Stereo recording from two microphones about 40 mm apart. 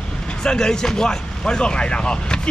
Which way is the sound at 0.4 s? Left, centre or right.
Centre.